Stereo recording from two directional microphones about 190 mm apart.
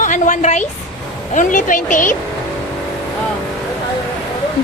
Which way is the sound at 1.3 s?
40° left (ahead or behind).